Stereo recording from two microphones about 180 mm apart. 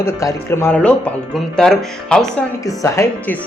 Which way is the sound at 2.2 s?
20° left (ahead or behind).